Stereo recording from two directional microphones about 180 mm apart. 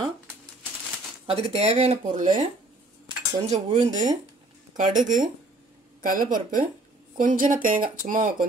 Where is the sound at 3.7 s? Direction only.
30° right (ahead or behind).